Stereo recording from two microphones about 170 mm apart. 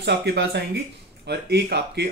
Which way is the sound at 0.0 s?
80° right.